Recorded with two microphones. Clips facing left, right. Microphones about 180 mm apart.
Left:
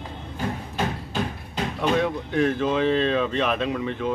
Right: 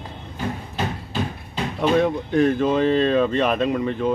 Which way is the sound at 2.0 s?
40° right (ahead or behind).